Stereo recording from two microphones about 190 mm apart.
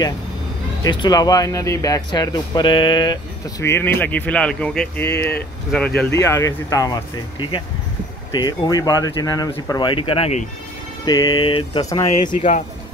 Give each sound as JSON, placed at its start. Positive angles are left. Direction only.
{"t": 0.8, "sound": "speech", "side_deg": 20}
{"t": 11.1, "sound": "speech", "side_deg": 20}
{"t": 12.2, "sound": "speech", "side_deg": 40}